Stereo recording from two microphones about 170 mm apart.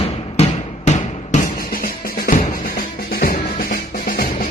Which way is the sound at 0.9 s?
50° left (ahead or behind).